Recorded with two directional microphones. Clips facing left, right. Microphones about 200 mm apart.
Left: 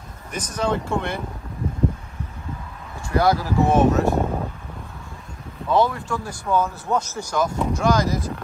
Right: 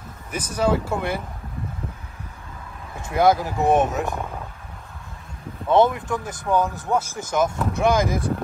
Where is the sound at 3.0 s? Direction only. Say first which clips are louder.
Right 1 dB; 20° right (ahead or behind).